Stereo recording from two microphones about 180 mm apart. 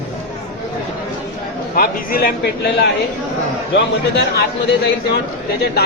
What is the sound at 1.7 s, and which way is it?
Speech, 55° left (ahead or behind).